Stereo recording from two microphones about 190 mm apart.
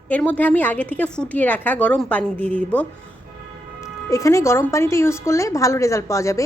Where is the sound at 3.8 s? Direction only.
15° left (ahead or behind).